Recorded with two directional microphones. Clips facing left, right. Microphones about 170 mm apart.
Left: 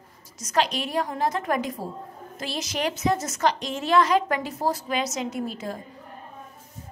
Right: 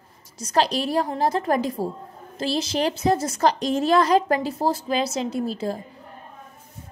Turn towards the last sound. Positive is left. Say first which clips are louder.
# right 5 dB
turn(degrees=-30)  # may be behind; listen again after turning